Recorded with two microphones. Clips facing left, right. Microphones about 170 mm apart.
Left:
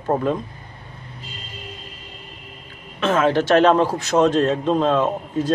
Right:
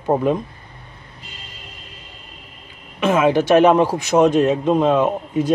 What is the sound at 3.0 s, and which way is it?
A man's voice, 15° right (ahead or behind).